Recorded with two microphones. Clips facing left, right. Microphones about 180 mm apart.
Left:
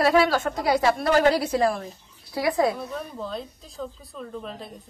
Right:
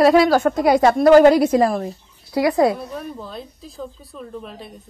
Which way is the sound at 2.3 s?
75° right (ahead or behind).